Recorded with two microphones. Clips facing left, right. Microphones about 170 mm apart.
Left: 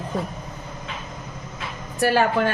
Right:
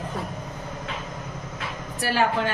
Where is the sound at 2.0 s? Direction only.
50° left (ahead or behind).